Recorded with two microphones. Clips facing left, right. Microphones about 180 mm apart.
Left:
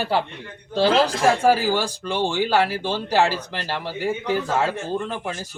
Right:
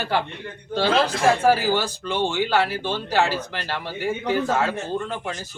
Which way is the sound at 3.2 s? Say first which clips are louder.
Left 1 dB; 35° left (ahead or behind).